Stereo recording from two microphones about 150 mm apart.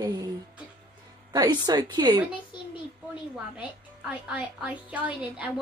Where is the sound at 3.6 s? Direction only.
10° right (ahead or behind).